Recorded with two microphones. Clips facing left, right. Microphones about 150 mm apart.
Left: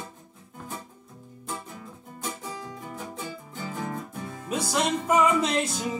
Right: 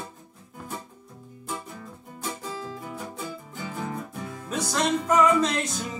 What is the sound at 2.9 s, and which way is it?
Music, 5° right (ahead or behind).